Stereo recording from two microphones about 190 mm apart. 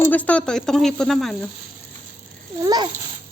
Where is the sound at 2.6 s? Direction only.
20° right (ahead or behind).